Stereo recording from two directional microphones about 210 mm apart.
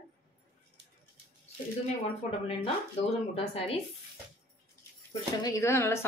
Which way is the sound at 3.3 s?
25° left (ahead or behind).